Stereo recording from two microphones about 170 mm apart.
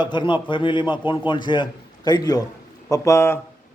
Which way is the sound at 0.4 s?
30° left (ahead or behind).